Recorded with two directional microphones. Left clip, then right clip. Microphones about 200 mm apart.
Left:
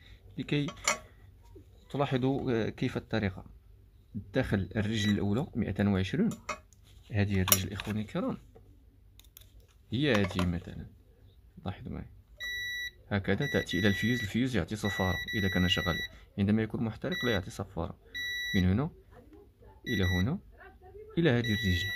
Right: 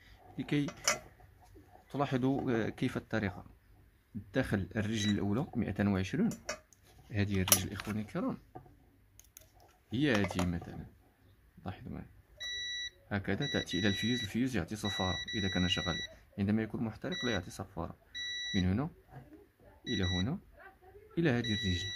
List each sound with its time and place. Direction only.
0.0 s cutlery: centre (ahead or behind)
1.9 s a man's voice: centre (ahead or behind)
9.8 s a man's voice: centre (ahead or behind)
12.4 s smoke detector: 25° right (ahead or behind)
13.1 s speech: 5° left (ahead or behind)
18.1 s smoke detector: 25° left (ahead or behind)
18.5 s speech: 5° left (ahead or behind)
19.9 s speech: 5° left (ahead or behind)
21.1 s speech: 5° left (ahead or behind)